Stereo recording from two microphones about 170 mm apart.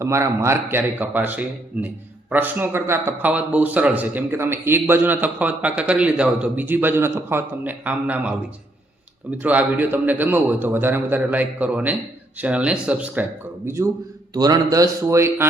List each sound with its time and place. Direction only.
0.0 s a man's voice: 15° right (ahead or behind)
9.4 s a man's voice: 10° right (ahead or behind)